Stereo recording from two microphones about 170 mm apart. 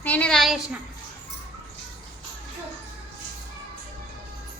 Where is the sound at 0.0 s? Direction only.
10° left (ahead or behind).